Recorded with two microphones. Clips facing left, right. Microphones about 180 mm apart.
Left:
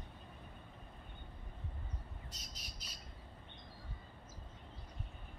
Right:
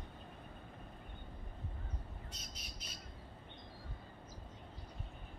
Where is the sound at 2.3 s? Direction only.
35° left (ahead or behind).